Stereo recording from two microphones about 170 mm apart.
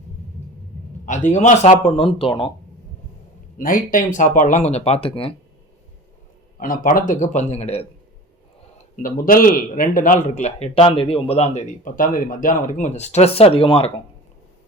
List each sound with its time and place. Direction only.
1.0 s a man's voice: 45° left (ahead or behind); by 2.5 s 30° left (ahead or behind)
3.6 s speech: 55° left (ahead or behind); by 5.3 s 35° left (ahead or behind)
6.6 s speech: 55° left (ahead or behind)
7.1 s a man's voice: 45° left (ahead or behind)
9.0 s a man's voice: 55° left (ahead or behind); by 13.9 s 30° left (ahead or behind)